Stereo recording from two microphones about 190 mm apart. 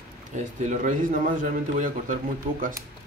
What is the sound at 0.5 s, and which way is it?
A man's voice, 40° right (ahead or behind).